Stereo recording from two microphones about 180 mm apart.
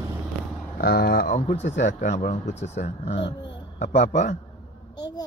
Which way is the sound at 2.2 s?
40° left (ahead or behind).